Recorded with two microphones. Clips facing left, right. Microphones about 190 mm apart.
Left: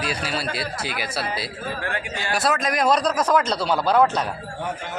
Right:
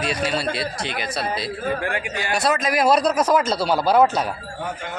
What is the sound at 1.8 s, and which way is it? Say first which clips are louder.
Speech: right 3 dB; 15° right (ahead or behind).